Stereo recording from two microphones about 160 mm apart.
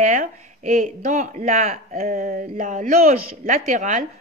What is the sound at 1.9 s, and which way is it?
Speech, 60° right (ahead or behind).